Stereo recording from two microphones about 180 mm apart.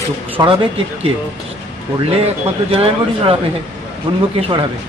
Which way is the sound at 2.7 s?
30° right (ahead or behind).